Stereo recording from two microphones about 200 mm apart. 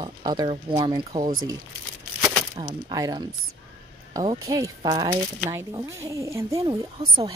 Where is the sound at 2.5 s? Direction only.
20° right (ahead or behind).